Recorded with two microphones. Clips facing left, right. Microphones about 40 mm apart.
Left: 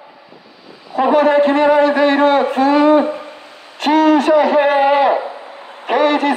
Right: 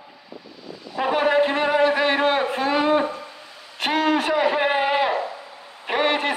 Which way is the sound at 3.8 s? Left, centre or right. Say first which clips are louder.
Left 9 dB; centre.